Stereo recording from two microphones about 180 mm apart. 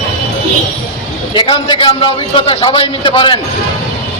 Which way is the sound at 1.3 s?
25° left (ahead or behind).